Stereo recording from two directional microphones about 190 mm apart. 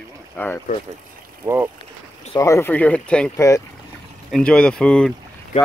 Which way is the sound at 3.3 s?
15° left (ahead or behind).